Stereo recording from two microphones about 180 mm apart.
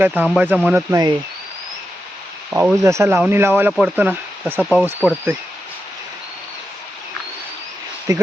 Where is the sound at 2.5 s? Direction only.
10° right (ahead or behind).